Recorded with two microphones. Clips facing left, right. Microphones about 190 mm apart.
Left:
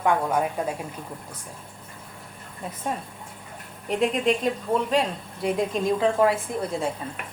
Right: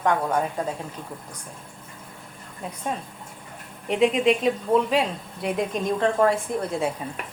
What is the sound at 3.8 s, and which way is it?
A woman's voice, centre (ahead or behind).